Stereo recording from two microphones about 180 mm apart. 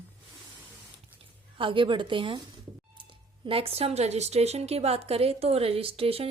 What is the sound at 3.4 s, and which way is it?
Speech, 30° right (ahead or behind).